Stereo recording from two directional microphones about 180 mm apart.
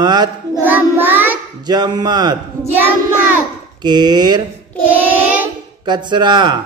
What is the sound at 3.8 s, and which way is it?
Mantra, 25° right (ahead or behind).